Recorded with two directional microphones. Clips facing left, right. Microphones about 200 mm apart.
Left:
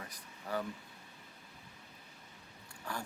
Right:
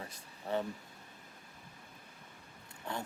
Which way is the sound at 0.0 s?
25° right (ahead or behind).